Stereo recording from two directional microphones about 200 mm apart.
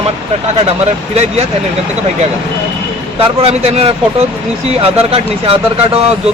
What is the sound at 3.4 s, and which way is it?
Speech, 30° right (ahead or behind).